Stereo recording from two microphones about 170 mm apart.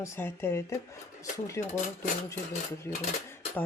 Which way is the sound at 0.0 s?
15° left (ahead or behind).